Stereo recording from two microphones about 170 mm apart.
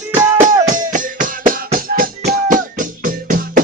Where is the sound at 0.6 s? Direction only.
50° right (ahead or behind).